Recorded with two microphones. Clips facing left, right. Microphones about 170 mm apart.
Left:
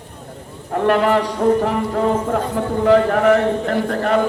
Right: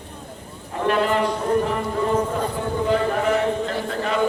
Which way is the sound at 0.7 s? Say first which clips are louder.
Left 5 dB; 60° left (ahead or behind).